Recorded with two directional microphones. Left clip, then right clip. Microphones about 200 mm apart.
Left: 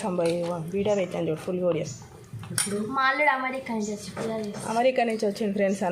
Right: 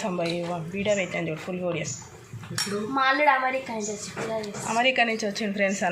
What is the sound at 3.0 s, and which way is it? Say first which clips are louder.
Speech: right 1 dB; 40° right (ahead or behind).